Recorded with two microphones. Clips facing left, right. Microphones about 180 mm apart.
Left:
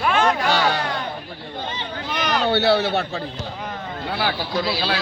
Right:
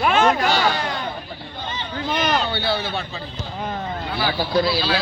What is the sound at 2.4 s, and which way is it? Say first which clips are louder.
Speech: left 6 dB; 75° left (ahead or behind).